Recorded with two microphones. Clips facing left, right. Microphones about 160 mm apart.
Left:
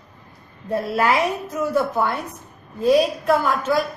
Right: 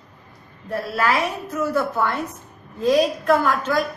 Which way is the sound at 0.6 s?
20° left (ahead or behind).